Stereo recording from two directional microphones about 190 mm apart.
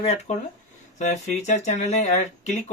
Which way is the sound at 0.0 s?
35° left (ahead or behind).